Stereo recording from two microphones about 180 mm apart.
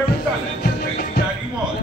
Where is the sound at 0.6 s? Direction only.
60° left (ahead or behind).